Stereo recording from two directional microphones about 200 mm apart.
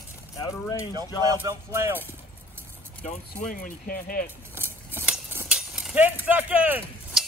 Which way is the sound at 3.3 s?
45° left (ahead or behind).